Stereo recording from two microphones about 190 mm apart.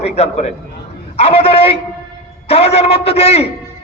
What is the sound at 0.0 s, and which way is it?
A man's voice, 35° left (ahead or behind).